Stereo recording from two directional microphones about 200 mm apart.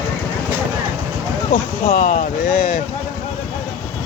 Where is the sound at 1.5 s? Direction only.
40° left (ahead or behind).